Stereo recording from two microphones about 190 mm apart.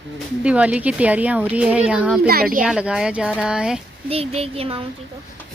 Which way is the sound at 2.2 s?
50° right (ahead or behind).